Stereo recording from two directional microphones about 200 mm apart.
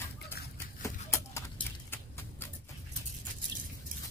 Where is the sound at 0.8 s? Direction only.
15° left (ahead or behind).